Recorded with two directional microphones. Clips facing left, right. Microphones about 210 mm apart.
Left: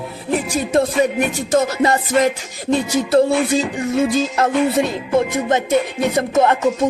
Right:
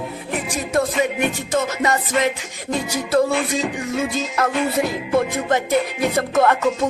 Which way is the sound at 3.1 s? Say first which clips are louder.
Left 4 dB; 30° left (ahead or behind).